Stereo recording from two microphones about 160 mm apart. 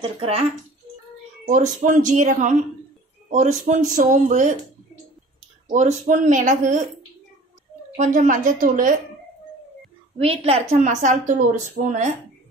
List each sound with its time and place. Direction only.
0.0 s speech: 35° right (ahead or behind)
1.5 s speech: 50° right (ahead or behind)
5.7 s speech: 50° right (ahead or behind)
7.9 s a woman's voice: 50° right (ahead or behind)
10.1 s speech: 40° right (ahead or behind)